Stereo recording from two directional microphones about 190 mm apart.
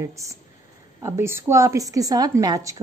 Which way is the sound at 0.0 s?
15° right (ahead or behind).